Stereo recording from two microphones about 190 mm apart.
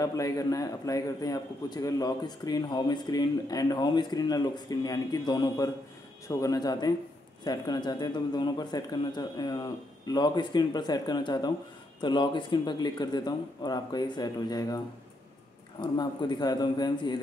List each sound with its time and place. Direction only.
0.0 s a man's voice: 20° left (ahead or behind)
15.8 s a man's voice: 25° left (ahead or behind)